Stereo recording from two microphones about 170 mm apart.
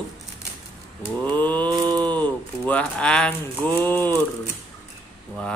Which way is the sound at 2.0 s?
10° left (ahead or behind).